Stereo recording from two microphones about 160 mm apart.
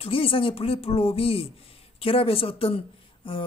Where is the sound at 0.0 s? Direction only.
35° left (ahead or behind).